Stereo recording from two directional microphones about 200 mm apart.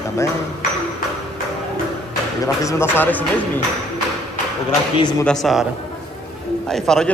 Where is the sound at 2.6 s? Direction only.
15° left (ahead or behind).